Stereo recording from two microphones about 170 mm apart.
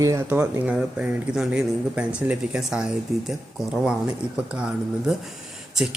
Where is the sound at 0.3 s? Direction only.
10° right (ahead or behind).